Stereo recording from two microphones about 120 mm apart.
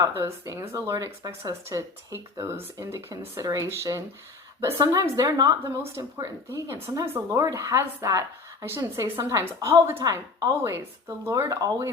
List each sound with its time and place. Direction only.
0.1 s speech: 20° right (ahead or behind)
10.0 s speech: 35° right (ahead or behind)